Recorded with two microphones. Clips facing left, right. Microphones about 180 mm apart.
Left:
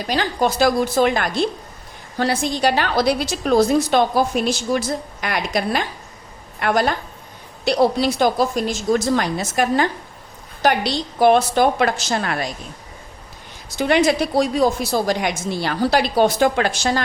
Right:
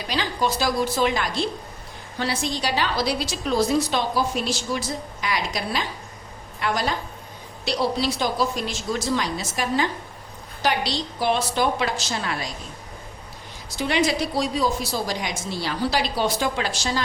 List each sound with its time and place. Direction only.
0.1 s a woman's voice: 50° left (ahead or behind)
13.7 s a woman's voice: 55° left (ahead or behind)